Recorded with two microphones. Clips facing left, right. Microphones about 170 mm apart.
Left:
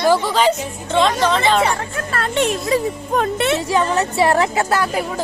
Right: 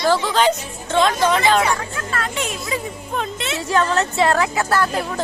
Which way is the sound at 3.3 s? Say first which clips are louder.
Left 8 dB; 60° left (ahead or behind).